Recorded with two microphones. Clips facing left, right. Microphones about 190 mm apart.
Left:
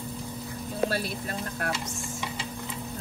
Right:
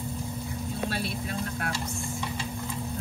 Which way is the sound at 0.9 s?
45° left (ahead or behind).